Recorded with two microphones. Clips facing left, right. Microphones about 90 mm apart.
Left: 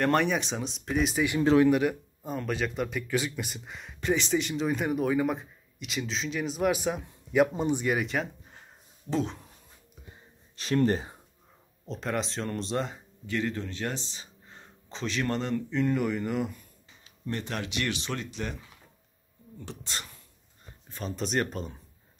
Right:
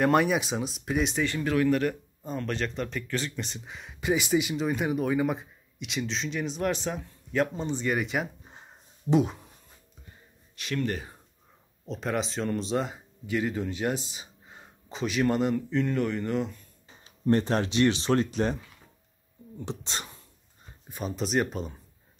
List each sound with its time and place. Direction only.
0.0 s speech: 5° right (ahead or behind)
1.4 s speech: 25° left (ahead or behind); by 9.5 s 5° right (ahead or behind)
10.5 s speech: 35° left (ahead or behind)
11.8 s speech: centre (ahead or behind)
15.7 s speech: 5° left (ahead or behind)
16.9 s speech: 40° right (ahead or behind)
19.6 s speech: 20° right (ahead or behind)
20.9 s speech: 5° right (ahead or behind)